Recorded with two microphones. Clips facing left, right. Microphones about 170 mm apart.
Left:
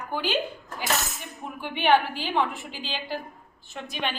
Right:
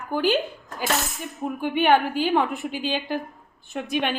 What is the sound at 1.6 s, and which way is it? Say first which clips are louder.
A woman's voice: right 2 dB; 50° right (ahead or behind).